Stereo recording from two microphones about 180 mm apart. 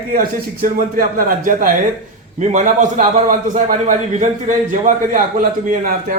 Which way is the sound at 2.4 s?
45° right (ahead or behind).